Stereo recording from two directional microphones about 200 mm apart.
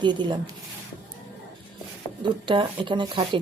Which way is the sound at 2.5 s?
25° right (ahead or behind).